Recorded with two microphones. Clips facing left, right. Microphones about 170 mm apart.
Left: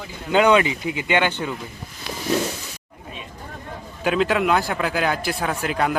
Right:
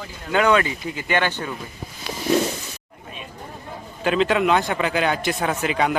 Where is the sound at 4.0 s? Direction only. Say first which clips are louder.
Right 1 dB; 5° left (ahead or behind).